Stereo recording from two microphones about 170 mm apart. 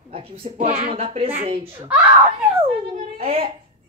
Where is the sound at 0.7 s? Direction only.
50° right (ahead or behind).